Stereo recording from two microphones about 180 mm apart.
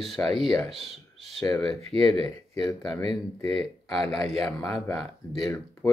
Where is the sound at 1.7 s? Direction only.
30° right (ahead or behind).